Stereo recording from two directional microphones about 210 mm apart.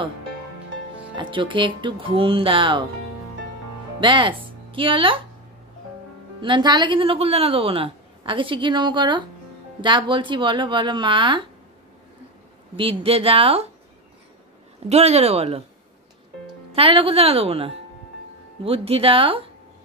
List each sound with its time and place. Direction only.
1.1 s a woman's voice: 25° right (ahead or behind)
4.0 s speech: 25° right (ahead or behind)
6.4 s a woman's voice: 20° right (ahead or behind)
12.7 s a woman's voice: 25° right (ahead or behind)
14.9 s speech: 30° right (ahead or behind)
16.7 s a woman's voice: 25° right (ahead or behind)